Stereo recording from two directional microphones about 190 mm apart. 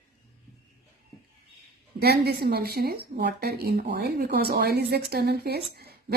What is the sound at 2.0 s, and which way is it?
A woman's voice, 55° right (ahead or behind).